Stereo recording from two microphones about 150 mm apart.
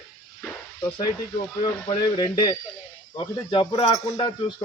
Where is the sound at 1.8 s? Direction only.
25° left (ahead or behind).